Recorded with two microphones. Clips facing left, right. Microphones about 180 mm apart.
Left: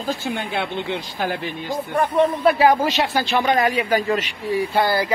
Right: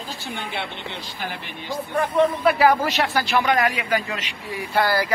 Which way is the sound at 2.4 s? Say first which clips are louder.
Left 2 dB; 25° left (ahead or behind).